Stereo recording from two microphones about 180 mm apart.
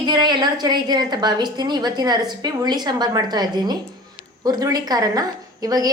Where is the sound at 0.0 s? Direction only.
25° right (ahead or behind).